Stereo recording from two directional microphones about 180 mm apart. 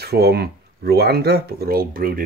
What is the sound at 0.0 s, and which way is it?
Speech, 65° right (ahead or behind).